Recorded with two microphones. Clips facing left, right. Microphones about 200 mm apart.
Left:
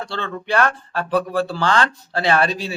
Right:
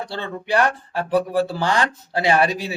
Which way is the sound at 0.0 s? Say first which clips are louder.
Left 1 dB; 15° right (ahead or behind).